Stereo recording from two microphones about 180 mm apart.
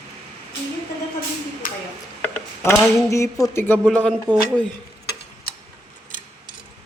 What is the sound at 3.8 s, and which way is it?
Speech, 5° left (ahead or behind).